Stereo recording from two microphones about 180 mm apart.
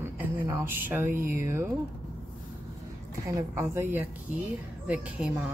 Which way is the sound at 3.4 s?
15° right (ahead or behind).